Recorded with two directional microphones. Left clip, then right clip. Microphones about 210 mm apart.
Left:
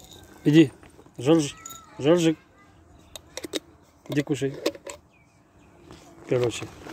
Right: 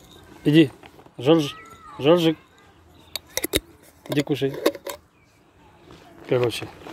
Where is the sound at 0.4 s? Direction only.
10° left (ahead or behind).